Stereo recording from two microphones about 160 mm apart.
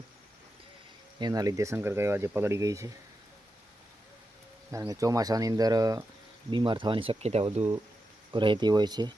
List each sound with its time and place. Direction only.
1.2 s speech: 25° right (ahead or behind)
4.7 s speech: 20° right (ahead or behind); by 7.7 s 40° right (ahead or behind)
8.3 s speech: 30° right (ahead or behind)